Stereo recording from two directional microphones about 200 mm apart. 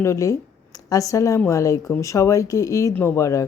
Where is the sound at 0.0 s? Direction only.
15° left (ahead or behind).